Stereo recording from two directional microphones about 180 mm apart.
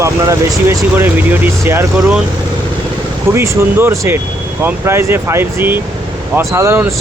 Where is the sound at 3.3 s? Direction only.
15° right (ahead or behind).